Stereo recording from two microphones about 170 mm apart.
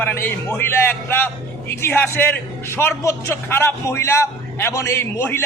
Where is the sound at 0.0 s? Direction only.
10° left (ahead or behind).